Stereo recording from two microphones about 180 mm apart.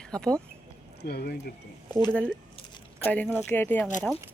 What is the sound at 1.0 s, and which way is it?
Speech, 65° left (ahead or behind).